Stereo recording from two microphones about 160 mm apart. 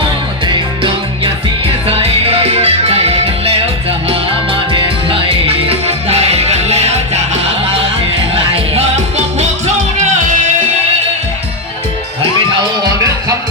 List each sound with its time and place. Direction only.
2.0 s music: 40° right (ahead or behind)
4.7 s music: 35° right (ahead or behind)
8.5 s music: 40° right (ahead or behind)